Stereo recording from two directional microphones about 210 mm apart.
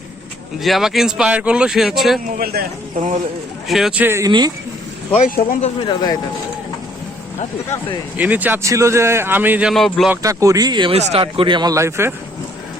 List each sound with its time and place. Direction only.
0.6 s speech: centre (ahead or behind)
2.2 s speech: 45° right (ahead or behind)
3.7 s speech: centre (ahead or behind); by 4.5 s 20° right (ahead or behind)
5.1 s speech: 35° left (ahead or behind)
5.8 s speech: 20° left (ahead or behind)
8.1 s speech: 5° right (ahead or behind)
10.2 s speech: 15° right (ahead or behind)